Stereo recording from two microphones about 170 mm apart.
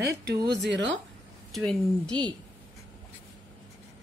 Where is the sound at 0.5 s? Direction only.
90° right.